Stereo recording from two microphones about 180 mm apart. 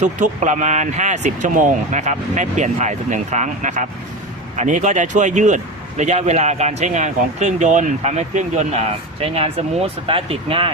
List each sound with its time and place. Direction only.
0.0 s speech: 40° right (ahead or behind)